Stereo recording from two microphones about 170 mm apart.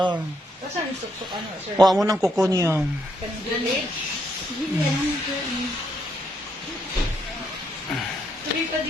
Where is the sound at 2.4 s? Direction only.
15° right (ahead or behind).